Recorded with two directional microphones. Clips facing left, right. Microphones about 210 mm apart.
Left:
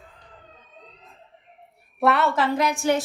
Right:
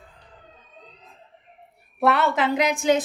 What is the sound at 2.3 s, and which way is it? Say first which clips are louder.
Speech: right 1 dB; 20° right (ahead or behind).